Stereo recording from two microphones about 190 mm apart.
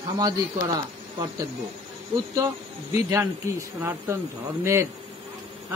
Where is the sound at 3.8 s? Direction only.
10° right (ahead or behind).